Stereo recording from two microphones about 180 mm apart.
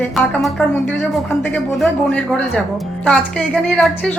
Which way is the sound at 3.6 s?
5° left (ahead or behind).